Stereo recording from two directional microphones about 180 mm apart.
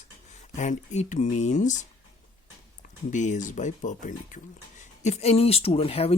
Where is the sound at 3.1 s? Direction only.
45° left (ahead or behind).